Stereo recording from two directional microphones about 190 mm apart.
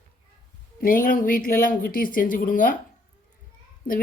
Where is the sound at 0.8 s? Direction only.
50° left (ahead or behind).